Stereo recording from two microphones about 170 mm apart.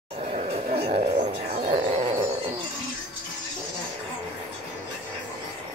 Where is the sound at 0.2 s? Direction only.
35° right (ahead or behind).